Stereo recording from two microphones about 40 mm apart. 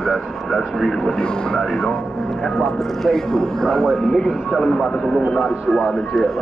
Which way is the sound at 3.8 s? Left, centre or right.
Centre.